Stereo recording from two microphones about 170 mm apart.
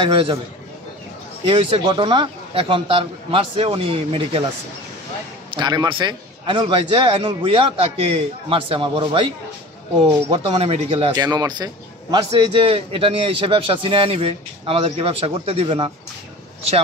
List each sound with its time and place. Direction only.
0.0 s a man's voice: 30° right (ahead or behind)
1.4 s a man's voice: 30° right (ahead or behind)
5.5 s a man's voice: 25° right (ahead or behind)
10.3 s a man's voice: 35° right (ahead or behind)